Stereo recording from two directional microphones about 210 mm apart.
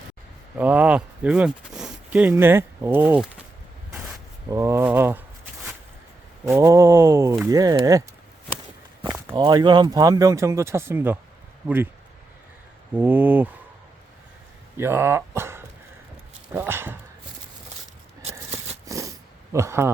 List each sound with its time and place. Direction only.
0.6 s speech: 5° right (ahead or behind)
4.4 s speech: 15° right (ahead or behind)
6.4 s speech: 15° right (ahead or behind)
9.0 s speech: 15° right (ahead or behind)
12.9 s speech: 10° right (ahead or behind)
14.8 s speech: 10° right (ahead or behind)
18.2 s a sound: 30° right (ahead or behind)
18.9 s a sound: 15° right (ahead or behind)
19.5 s speech: 10° right (ahead or behind)